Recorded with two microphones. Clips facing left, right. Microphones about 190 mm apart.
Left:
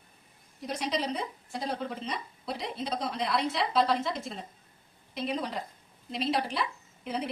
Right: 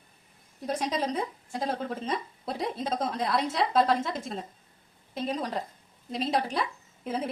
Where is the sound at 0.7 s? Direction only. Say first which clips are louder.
Right 2 dB; 45° right (ahead or behind).